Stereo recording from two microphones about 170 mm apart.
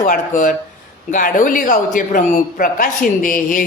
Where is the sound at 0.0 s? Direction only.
50° left (ahead or behind).